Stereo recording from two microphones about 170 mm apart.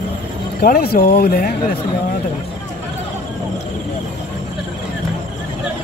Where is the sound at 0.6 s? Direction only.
65° left (ahead or behind).